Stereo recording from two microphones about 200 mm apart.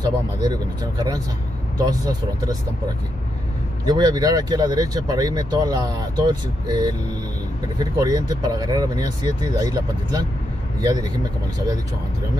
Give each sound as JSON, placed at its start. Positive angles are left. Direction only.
{"t": 0.0, "sound": "speech", "side_deg": -20}
{"t": 3.8, "sound": "speech", "side_deg": -20}